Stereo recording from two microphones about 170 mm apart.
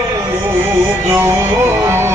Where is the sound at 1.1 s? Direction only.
15° right (ahead or behind).